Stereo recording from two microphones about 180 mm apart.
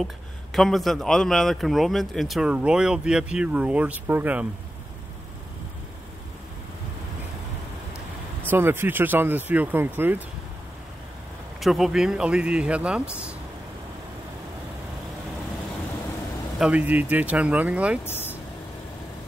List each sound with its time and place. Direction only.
0.0 s a man's voice: centre (ahead or behind)
8.4 s speech: 10° right (ahead or behind)
11.6 s a man's voice: centre (ahead or behind)
16.5 s speech: 5° right (ahead or behind)
18.0 s speech: 10° left (ahead or behind)